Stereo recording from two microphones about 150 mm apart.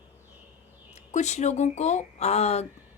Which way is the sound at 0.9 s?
50° left (ahead or behind).